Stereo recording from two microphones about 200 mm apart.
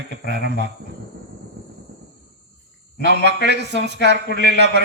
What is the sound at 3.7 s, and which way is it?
A man's voice, 60° right (ahead or behind).